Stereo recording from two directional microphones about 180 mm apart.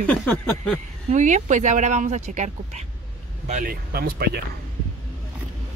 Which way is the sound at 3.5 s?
55° right (ahead or behind).